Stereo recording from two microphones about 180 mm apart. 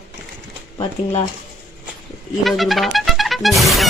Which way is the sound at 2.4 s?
Centre (ahead or behind).